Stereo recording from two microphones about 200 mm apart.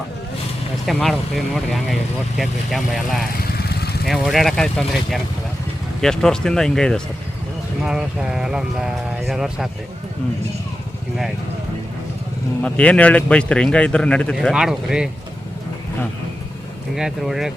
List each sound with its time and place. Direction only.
0.9 s a man's voice: centre (ahead or behind)
2.4 s a man's voice: centre (ahead or behind)
3.4 s vehicle: 50° left (ahead or behind)
4.0 s a man's voice: centre (ahead or behind)
12.6 s a man's voice: 5° left (ahead or behind)
16.9 s a man's voice: centre (ahead or behind)